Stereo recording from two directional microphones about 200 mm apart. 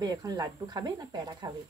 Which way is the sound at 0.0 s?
20° right (ahead or behind).